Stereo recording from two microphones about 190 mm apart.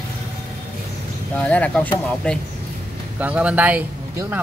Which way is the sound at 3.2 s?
5° right (ahead or behind).